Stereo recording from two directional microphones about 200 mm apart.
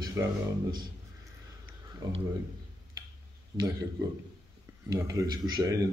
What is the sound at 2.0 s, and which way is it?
Speech, 20° right (ahead or behind).